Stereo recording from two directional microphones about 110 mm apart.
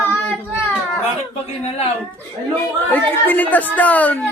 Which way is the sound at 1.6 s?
70° left (ahead or behind).